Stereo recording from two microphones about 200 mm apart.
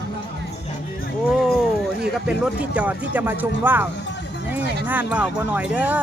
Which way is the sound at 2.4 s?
5° right (ahead or behind).